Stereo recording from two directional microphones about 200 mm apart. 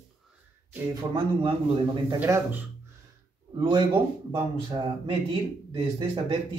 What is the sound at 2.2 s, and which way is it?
Speech, 10° right (ahead or behind).